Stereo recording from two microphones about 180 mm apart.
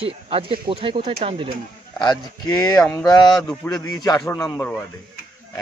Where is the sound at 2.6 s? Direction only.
20° left (ahead or behind).